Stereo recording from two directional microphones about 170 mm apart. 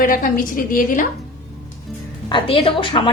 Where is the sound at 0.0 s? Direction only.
55° left (ahead or behind).